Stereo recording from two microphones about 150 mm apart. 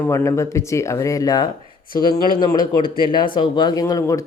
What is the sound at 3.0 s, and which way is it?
Speech, 30° left (ahead or behind).